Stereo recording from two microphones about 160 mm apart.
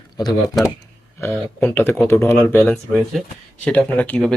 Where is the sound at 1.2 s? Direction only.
15° left (ahead or behind).